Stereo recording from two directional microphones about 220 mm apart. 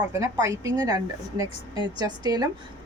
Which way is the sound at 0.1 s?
15° right (ahead or behind).